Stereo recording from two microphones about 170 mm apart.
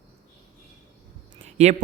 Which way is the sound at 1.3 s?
40° right (ahead or behind).